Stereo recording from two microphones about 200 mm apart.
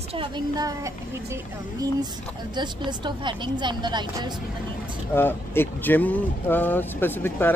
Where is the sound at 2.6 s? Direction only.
20° right (ahead or behind).